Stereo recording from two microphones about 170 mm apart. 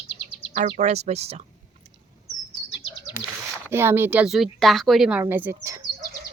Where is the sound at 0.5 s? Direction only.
45° right (ahead or behind).